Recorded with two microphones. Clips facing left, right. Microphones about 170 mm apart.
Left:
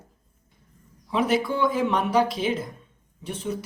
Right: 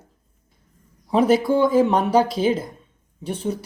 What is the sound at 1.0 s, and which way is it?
Speech, 40° right (ahead or behind).